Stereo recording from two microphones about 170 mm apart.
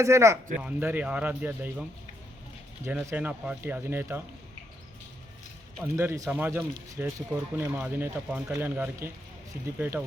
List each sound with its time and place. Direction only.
0.0 s speech: 15° right (ahead or behind)
2.8 s speech: 15° right (ahead or behind)
5.8 s speech: 15° right (ahead or behind)